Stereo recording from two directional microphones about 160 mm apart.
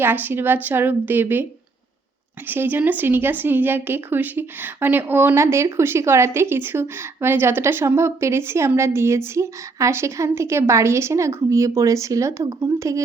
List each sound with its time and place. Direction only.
0.0 s speech: 10° right (ahead or behind)
2.5 s speech: 10° right (ahead or behind)